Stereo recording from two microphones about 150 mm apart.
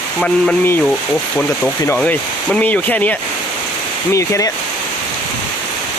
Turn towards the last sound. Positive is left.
turn(degrees=20)  # may be behind; listen again after turning